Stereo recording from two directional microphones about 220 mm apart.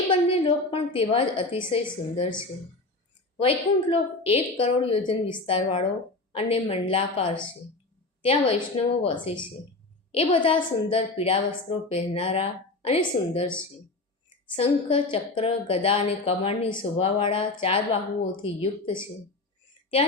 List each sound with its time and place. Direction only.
0.1 s a woman's voice: 25° left (ahead or behind)
3.3 s a woman's voice: 25° left (ahead or behind)
8.7 s a woman's voice: 25° left (ahead or behind)
14.6 s a woman's voice: 25° left (ahead or behind)